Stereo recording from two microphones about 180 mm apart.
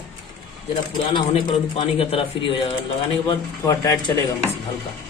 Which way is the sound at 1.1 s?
30° left (ahead or behind).